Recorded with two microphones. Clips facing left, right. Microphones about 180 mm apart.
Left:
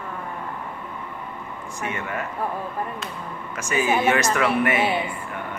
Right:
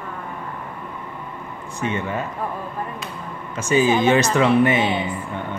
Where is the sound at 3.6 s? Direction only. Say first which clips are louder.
Right 5 dB; 30° right (ahead or behind).